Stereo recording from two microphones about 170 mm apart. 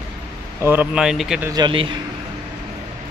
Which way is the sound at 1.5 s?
30° right (ahead or behind).